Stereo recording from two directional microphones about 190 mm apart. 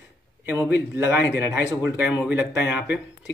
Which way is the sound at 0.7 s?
10° right (ahead or behind).